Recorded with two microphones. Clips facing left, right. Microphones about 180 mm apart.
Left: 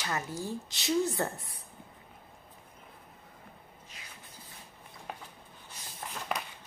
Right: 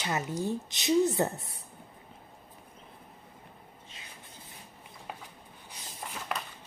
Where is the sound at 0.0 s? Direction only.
20° right (ahead or behind).